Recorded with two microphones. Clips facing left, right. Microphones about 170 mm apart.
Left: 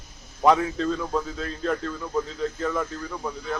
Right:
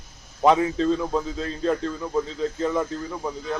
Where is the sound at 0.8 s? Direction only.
25° right (ahead or behind).